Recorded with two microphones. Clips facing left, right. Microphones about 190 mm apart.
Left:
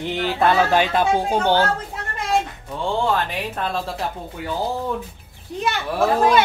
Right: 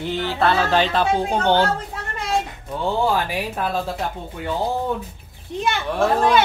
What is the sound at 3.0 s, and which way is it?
Speech, 5° right (ahead or behind).